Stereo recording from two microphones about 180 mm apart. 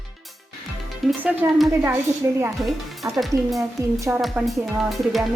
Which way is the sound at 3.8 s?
15° right (ahead or behind).